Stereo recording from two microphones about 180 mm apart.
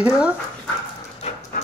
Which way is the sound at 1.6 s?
55° left (ahead or behind).